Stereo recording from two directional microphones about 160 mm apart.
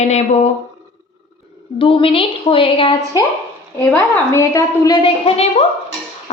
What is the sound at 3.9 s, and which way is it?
A woman's voice, 15° left (ahead or behind).